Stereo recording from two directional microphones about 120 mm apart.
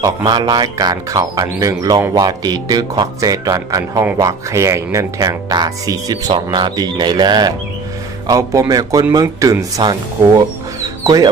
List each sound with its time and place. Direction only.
0.0 s speech: 35° right (ahead or behind)